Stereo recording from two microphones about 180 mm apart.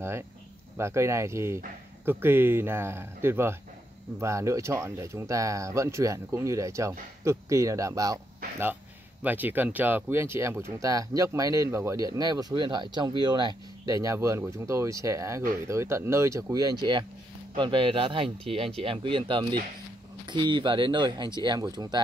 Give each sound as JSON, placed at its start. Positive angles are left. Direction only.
{"t": 0.7, "sound": "speech", "side_deg": -15}
{"t": 9.2, "sound": "speech", "side_deg": -10}